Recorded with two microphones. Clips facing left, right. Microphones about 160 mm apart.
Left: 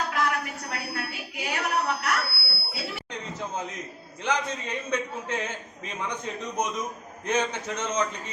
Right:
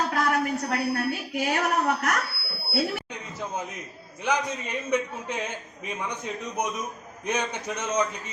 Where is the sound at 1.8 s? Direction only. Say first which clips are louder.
Right 3 dB; 45° right (ahead or behind).